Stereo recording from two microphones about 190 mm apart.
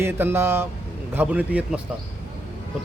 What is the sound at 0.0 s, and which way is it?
A man's voice, 10° right (ahead or behind).